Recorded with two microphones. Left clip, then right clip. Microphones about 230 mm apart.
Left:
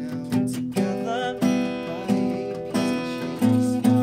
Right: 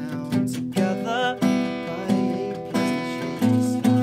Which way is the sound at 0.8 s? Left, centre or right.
Centre.